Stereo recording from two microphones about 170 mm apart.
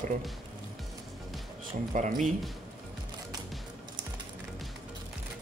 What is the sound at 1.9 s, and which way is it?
Speech, 50° right (ahead or behind).